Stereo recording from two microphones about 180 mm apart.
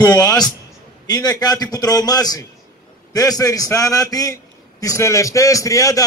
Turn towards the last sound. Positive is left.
turn(degrees=20)  # may be behind; listen again after turning